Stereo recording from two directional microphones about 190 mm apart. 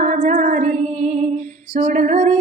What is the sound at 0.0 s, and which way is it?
Female singing, 40° right (ahead or behind).